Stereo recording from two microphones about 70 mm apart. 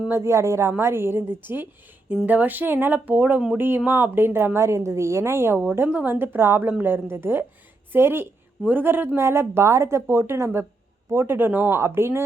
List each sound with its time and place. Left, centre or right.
0.1 s a woman's voice: right
5.9 s speech: centre
6.1 s speech: right